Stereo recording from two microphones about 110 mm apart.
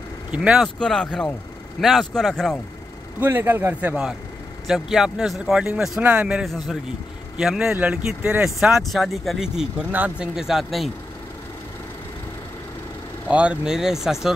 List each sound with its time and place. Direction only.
0.3 s speech: 5° right (ahead or behind)
0.7 s speech: 5° left (ahead or behind)
3.2 s a man's voice: 20° right (ahead or behind)
3.9 s speech: 5° right (ahead or behind)
13.3 s speech: 10° right (ahead or behind)